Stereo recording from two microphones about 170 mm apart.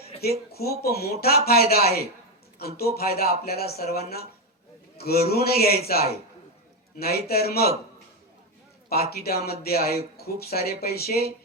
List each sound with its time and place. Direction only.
0.2 s a man's voice: 65° left (ahead or behind)
7.0 s a man's voice: 65° left (ahead or behind)
8.9 s a man's voice: 65° left (ahead or behind)